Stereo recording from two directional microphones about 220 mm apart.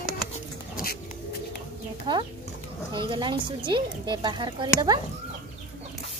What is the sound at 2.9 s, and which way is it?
Speech, 20° right (ahead or behind).